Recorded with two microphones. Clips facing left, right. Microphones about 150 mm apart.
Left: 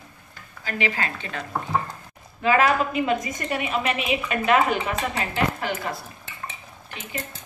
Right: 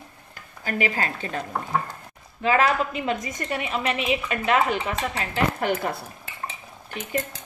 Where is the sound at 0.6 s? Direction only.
45° right (ahead or behind).